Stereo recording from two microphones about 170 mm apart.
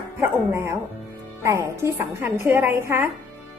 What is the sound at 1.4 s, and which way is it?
A woman's voice, 15° right (ahead or behind).